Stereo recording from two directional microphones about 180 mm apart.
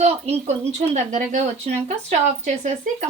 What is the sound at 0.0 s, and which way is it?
Speech, 35° right (ahead or behind).